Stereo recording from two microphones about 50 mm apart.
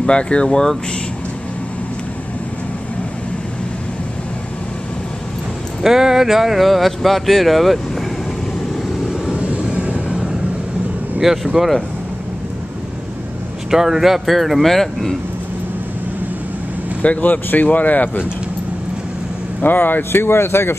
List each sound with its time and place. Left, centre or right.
0.0 s speech: left
5.8 s speech: centre
9.3 s vehicle: right
11.1 s speech: centre
13.7 s speech: centre
17.0 s speech: left
19.6 s speech: left